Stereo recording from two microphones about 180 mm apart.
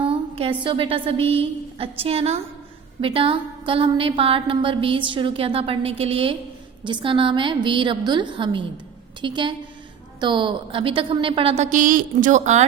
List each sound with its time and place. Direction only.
0.0 s a woman's voice: 30° right (ahead or behind)